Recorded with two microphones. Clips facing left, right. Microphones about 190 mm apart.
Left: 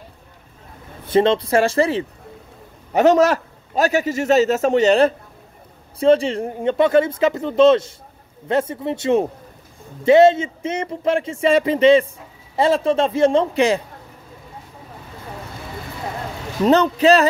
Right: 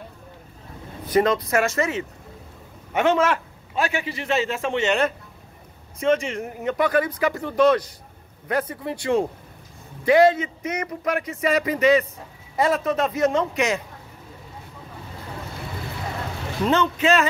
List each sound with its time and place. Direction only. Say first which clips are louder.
1.0 s a man's voice: left 4 dB; 25° left (ahead or behind)
16.6 s a man's voice: left 6 dB; 40° left (ahead or behind)